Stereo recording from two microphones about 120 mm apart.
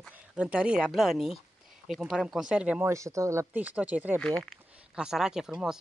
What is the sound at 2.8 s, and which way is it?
Speech, 25° right (ahead or behind).